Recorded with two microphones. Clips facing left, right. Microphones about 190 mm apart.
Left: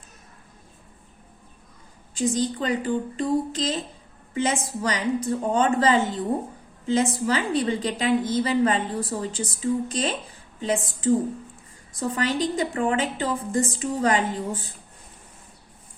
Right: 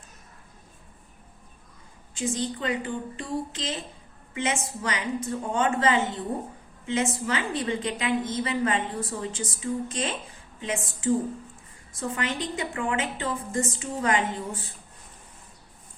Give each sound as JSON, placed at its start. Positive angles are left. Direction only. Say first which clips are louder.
{"t": 2.1, "sound": "a woman's voice", "louder": "left 5 dB", "side_deg": 35}